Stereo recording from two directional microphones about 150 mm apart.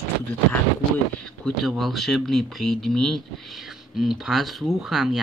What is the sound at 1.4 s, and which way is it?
Speech, centre (ahead or behind).